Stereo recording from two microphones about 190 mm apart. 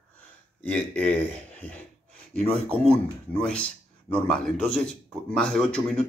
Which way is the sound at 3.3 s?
5° left (ahead or behind).